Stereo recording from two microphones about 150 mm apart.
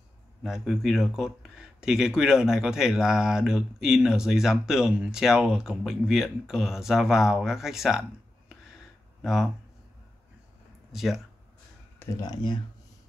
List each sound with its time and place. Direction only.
0.4 s speech: centre (ahead or behind)
9.2 s speech: centre (ahead or behind)
10.9 s speech: centre (ahead or behind)
12.2 s speech: 25° left (ahead or behind)